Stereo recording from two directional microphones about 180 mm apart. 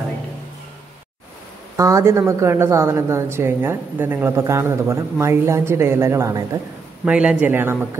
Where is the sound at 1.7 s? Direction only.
15° right (ahead or behind).